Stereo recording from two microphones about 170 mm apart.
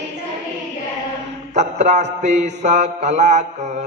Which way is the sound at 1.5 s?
40° right (ahead or behind).